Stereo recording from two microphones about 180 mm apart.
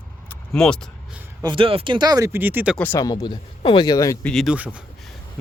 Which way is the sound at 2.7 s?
15° left (ahead or behind).